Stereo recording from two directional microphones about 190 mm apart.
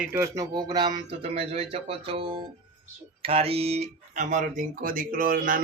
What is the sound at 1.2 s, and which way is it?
Speech, 30° right (ahead or behind).